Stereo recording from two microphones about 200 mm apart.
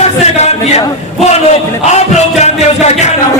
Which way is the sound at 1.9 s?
35° left (ahead or behind).